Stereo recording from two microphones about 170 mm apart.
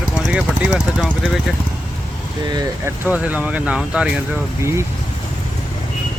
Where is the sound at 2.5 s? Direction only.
20° right (ahead or behind).